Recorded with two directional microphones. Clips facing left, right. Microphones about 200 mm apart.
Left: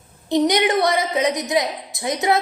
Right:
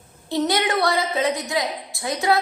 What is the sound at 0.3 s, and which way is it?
A woman's voice, 15° left (ahead or behind).